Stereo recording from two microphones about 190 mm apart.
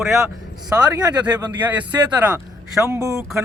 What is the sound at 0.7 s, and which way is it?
Speech, 15° right (ahead or behind).